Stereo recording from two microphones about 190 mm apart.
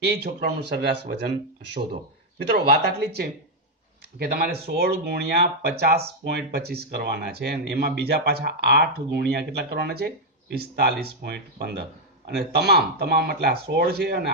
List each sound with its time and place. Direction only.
0.0 s speech: 60° right (ahead or behind)